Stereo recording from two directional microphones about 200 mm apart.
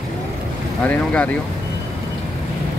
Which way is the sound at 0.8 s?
10° left (ahead or behind).